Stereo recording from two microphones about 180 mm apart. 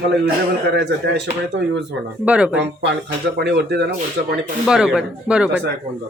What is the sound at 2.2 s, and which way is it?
Speech, 5° right (ahead or behind).